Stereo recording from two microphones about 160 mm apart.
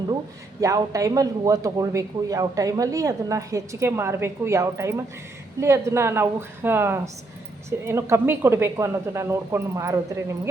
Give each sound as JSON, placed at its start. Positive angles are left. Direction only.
{"t": 0.6, "sound": "a man's voice", "side_deg": -20}